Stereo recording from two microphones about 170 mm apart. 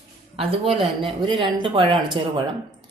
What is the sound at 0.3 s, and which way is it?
Speech, 35° right (ahead or behind).